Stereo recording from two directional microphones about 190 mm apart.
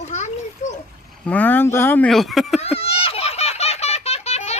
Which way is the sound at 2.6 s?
30° left (ahead or behind).